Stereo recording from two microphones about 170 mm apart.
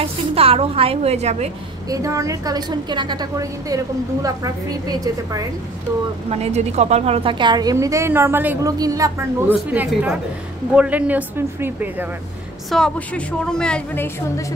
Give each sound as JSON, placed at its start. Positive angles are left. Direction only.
{"t": 0.0, "sound": "a woman's voice", "side_deg": -35}
{"t": 1.9, "sound": "a woman's voice", "side_deg": -20}
{"t": 6.3, "sound": "a woman's voice", "side_deg": -40}
{"t": 12.6, "sound": "a woman's voice", "side_deg": 5}